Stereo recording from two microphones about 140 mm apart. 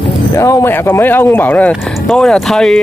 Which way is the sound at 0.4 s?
20° left (ahead or behind).